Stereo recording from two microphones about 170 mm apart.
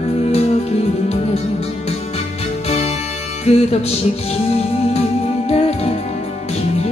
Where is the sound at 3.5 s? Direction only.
35° left (ahead or behind).